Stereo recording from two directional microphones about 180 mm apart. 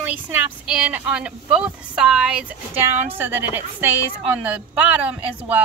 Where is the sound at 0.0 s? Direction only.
10° right (ahead or behind).